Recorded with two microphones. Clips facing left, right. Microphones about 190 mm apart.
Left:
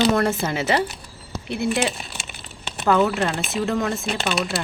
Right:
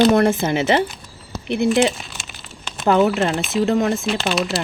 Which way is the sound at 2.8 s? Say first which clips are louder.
Right 3 dB; 25° right (ahead or behind).